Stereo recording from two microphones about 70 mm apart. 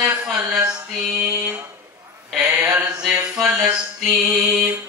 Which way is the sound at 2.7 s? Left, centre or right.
Centre.